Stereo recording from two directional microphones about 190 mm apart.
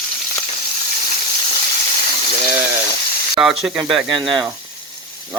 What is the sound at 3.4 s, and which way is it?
Speech, 5° right (ahead or behind).